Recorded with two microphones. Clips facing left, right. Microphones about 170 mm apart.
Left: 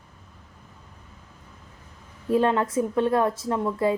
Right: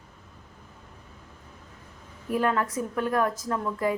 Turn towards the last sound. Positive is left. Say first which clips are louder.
# left 4 dB
turn(degrees=25)  # may be behind; listen again after turning